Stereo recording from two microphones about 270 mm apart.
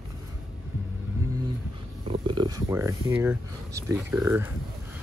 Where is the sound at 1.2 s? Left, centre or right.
Centre.